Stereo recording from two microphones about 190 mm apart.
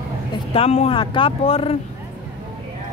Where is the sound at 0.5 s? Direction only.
35° left (ahead or behind).